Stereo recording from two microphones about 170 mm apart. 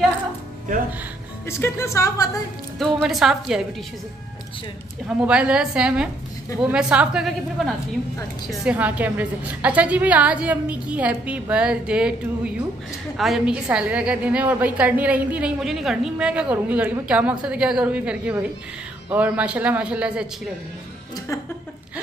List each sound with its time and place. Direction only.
1.4 s speech: 15° left (ahead or behind)
2.8 s a woman's voice: centre (ahead or behind)
5.0 s a woman's voice: 5° right (ahead or behind)